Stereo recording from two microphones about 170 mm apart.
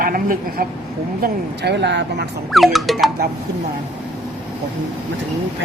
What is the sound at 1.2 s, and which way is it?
Speech, 85° right.